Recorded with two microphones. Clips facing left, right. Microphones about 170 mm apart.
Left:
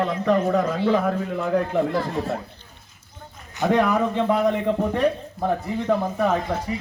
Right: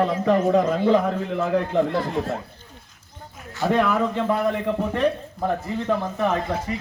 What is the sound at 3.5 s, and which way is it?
Speech, 20° left (ahead or behind).